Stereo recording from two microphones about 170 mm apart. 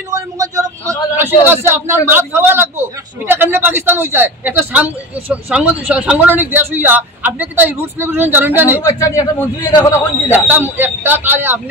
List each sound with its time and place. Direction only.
0.1 s a man's voice: 20° right (ahead or behind)
8.8 s a man's voice: 20° left (ahead or behind)
10.3 s a man's voice: 10° right (ahead or behind)